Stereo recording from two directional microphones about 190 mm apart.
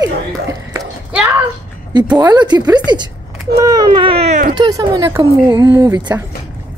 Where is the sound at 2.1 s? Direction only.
20° right (ahead or behind).